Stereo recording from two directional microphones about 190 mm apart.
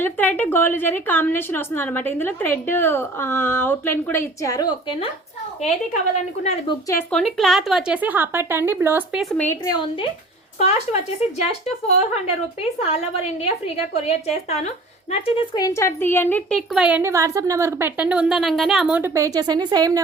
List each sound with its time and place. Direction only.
0.0 s a woman's voice: 10° left (ahead or behind); by 5.0 s 25° left (ahead or behind)
5.6 s a woman's voice: 40° left (ahead or behind)
6.7 s a woman's voice: 20° left (ahead or behind)
7.1 s speech: centre (ahead or behind)
9.4 s a woman's voice: 10° left (ahead or behind)
10.6 s a woman's voice: 35° left (ahead or behind)
15.1 s speech: 25° left (ahead or behind); by 20.0 s 20° right (ahead or behind)